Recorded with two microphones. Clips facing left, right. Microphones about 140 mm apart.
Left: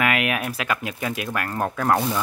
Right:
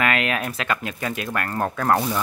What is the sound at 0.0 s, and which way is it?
Speech, 10° left (ahead or behind).